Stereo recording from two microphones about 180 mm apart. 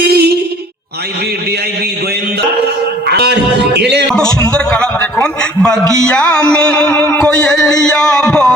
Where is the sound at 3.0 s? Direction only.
65° right (ahead or behind).